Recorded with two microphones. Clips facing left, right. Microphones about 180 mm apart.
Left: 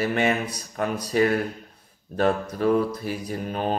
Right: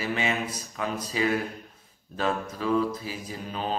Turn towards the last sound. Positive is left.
turn(degrees=55)  # may be behind; listen again after turning